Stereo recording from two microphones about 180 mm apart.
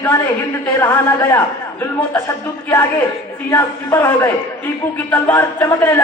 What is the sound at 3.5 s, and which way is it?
A man's voice, 15° left (ahead or behind).